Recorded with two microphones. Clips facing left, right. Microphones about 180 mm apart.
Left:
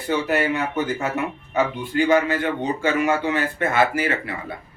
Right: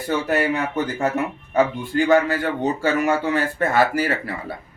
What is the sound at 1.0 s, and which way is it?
Speech, 40° right (ahead or behind).